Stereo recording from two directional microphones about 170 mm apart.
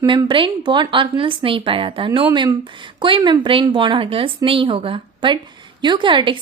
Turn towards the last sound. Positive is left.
turn(degrees=-30)  # may be behind; listen again after turning